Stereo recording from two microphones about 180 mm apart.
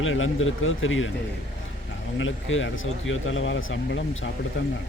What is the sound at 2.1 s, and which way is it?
Speech, 90° left.